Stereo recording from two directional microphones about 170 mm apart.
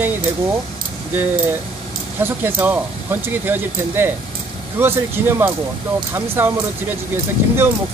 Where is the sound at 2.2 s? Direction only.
15° right (ahead or behind).